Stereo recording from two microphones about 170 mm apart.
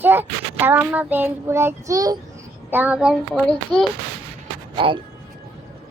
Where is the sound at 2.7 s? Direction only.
10° right (ahead or behind).